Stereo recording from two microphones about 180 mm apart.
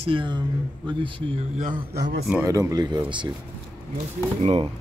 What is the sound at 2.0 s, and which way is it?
Speech, 70° right (ahead or behind).